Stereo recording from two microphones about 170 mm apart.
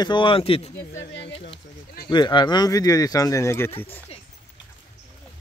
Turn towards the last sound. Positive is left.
turn(degrees=10)  # may be behind; listen again after turning